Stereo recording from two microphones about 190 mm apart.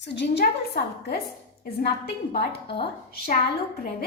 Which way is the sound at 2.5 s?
60° left (ahead or behind).